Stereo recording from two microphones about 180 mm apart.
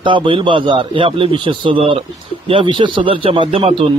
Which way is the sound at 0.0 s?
30° right (ahead or behind).